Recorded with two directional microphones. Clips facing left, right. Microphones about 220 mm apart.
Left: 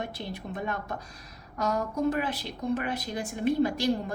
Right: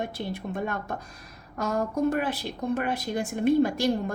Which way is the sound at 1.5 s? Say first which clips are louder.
Right 2 dB; 50° right (ahead or behind).